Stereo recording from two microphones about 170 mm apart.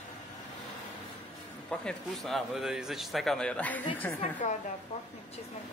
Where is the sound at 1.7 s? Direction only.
Centre (ahead or behind).